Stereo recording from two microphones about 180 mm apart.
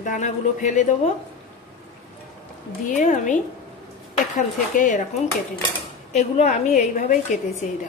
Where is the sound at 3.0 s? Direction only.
45° left (ahead or behind).